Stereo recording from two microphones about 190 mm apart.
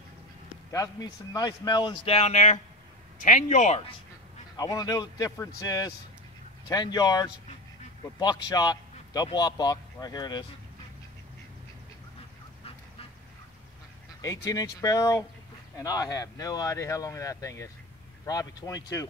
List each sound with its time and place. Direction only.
0.7 s a man's voice: 20° left (ahead or behind); by 3.8 s 35° left (ahead or behind)
4.6 s speech: 20° left (ahead or behind)
8.5 s a man's voice: 20° left (ahead or behind)
14.2 s speech: 15° left (ahead or behind)